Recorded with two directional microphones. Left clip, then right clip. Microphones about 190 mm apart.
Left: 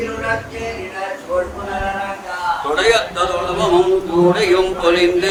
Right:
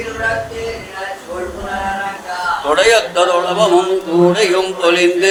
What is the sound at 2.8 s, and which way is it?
A man's voice, 5° right (ahead or behind).